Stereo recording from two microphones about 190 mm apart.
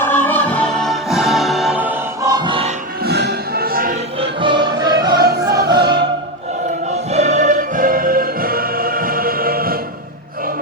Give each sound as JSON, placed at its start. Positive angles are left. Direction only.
{"t": 0.0, "sound": "music", "side_deg": 10}
{"t": 2.3, "sound": "music", "side_deg": -25}
{"t": 3.0, "sound": "music", "side_deg": -60}
{"t": 4.2, "sound": "music", "side_deg": -25}
{"t": 6.9, "sound": "music", "side_deg": -35}